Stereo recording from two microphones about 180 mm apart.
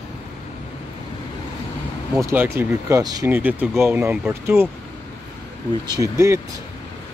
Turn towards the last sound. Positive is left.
turn(degrees=-15)  # may be behind; listen again after turning